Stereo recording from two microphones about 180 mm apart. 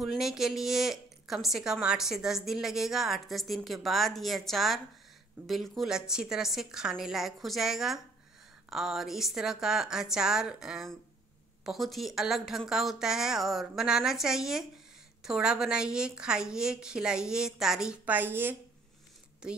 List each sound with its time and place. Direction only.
0.0 s a woman's voice: centre (ahead or behind)